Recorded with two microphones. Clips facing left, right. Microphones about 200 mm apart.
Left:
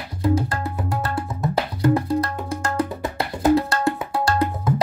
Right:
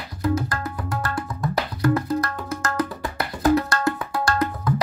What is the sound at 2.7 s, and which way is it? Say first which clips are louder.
Music: left 3 dB; 25° left (ahead or behind).